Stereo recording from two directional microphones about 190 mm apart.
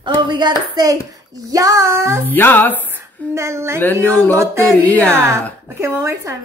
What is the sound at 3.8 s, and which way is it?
Speech, 10° left (ahead or behind).